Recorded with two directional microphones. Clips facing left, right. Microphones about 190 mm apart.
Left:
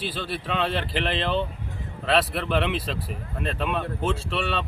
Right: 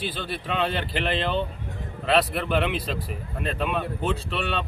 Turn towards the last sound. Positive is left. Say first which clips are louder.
# left 1 dB
turn(degrees=0)  # may be behind; listen again after turning